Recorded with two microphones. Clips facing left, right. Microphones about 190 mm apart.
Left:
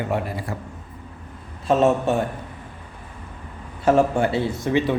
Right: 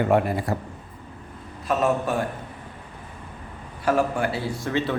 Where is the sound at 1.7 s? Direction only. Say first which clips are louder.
Left 5 dB; 25° left (ahead or behind).